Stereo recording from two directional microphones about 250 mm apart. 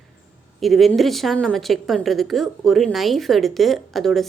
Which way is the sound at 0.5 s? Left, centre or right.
Centre.